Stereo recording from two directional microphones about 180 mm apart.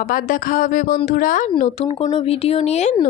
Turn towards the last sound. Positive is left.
turn(degrees=40)  # may be behind; listen again after turning